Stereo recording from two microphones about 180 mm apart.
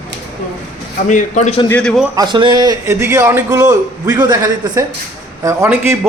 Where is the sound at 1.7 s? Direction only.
5° left (ahead or behind).